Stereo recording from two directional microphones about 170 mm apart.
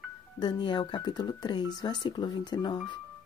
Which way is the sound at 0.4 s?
25° left (ahead or behind).